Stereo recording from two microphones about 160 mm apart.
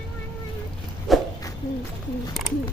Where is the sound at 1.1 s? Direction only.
Centre (ahead or behind).